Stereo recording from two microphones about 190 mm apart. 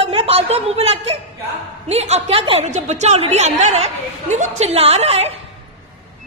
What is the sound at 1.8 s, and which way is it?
A woman's voice, 35° right (ahead or behind).